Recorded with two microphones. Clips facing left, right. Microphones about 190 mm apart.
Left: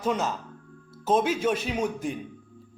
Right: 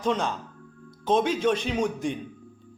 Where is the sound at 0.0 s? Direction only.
5° left (ahead or behind).